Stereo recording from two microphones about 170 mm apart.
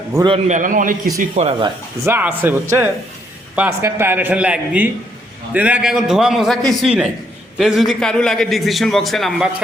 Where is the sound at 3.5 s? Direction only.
10° right (ahead or behind).